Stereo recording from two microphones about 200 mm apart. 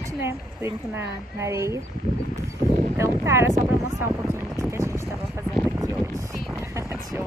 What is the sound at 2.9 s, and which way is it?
Speech, 15° right (ahead or behind).